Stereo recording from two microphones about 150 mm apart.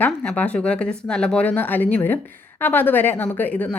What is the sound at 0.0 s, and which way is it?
Speech, 10° left (ahead or behind).